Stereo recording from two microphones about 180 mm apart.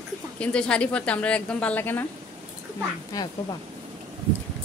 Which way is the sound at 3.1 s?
20° left (ahead or behind).